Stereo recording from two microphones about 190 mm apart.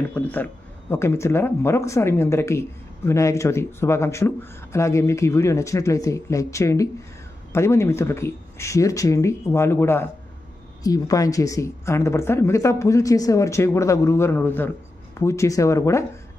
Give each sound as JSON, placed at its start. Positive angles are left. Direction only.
{"t": 0.1, "sound": "speech", "side_deg": 10}